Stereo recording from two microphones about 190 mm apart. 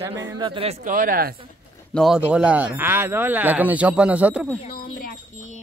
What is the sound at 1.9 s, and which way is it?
Speech, centre (ahead or behind).